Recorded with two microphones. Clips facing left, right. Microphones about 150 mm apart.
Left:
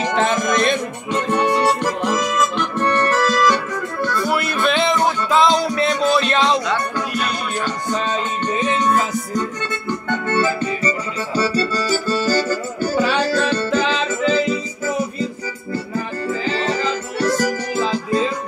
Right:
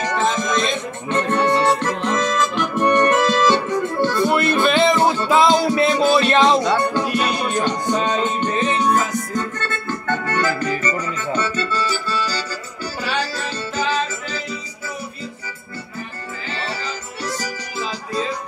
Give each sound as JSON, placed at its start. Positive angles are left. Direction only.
{"t": 0.1, "sound": "music", "side_deg": 65}
{"t": 1.1, "sound": "music", "side_deg": 10}
{"t": 2.5, "sound": "accordion", "side_deg": 0}
{"t": 2.8, "sound": "music", "side_deg": -15}
{"t": 4.3, "sound": "music", "side_deg": 5}
{"t": 7.5, "sound": "music", "side_deg": -20}
{"t": 8.7, "sound": "music", "side_deg": 0}
{"t": 9.3, "sound": "music", "side_deg": 15}
{"t": 16.4, "sound": "music", "side_deg": 45}